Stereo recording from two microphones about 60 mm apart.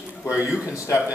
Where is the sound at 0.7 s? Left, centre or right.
Left.